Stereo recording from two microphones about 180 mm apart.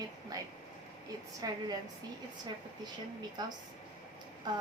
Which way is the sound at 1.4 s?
20° right (ahead or behind).